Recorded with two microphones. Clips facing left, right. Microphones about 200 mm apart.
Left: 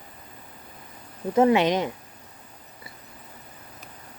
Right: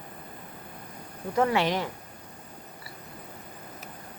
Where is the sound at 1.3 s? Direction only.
20° left (ahead or behind).